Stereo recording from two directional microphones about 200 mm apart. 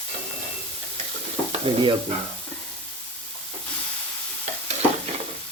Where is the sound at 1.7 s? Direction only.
25° right (ahead or behind).